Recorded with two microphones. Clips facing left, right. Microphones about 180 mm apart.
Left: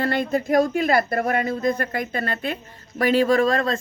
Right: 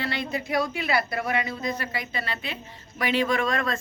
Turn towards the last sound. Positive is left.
turn(degrees=30)  # may be behind; listen again after turning